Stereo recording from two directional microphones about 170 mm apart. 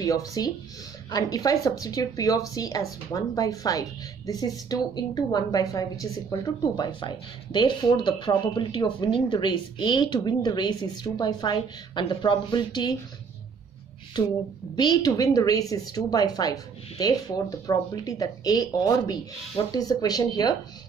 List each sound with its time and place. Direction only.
0.0 s a woman's voice: 20° left (ahead or behind)
14.8 s a woman's voice: 25° left (ahead or behind)